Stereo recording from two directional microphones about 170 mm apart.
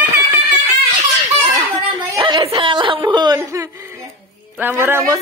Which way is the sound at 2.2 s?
30° right (ahead or behind).